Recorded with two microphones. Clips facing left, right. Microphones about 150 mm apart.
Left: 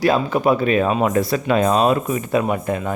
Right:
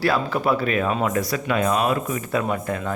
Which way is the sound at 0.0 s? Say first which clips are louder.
Left 4 dB; 20° left (ahead or behind).